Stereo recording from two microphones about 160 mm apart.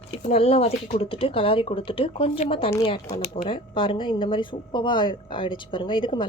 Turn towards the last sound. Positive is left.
turn(degrees=30)  # may be behind; listen again after turning